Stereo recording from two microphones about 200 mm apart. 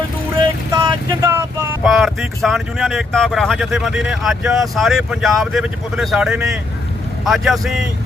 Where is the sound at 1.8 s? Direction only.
Centre (ahead or behind).